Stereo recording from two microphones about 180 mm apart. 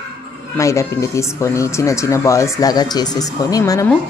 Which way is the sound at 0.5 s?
15° left (ahead or behind).